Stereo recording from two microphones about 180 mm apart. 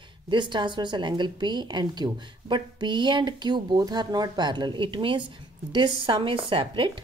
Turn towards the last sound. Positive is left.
turn(degrees=-25)  # may be behind; listen again after turning